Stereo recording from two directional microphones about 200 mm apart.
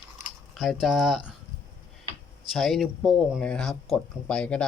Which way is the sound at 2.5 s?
Centre (ahead or behind).